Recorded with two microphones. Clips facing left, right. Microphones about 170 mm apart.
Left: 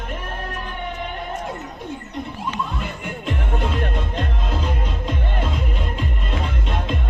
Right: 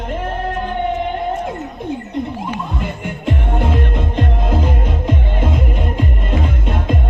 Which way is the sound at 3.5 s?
50° right (ahead or behind).